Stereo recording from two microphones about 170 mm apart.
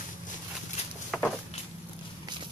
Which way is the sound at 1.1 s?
Centre (ahead or behind).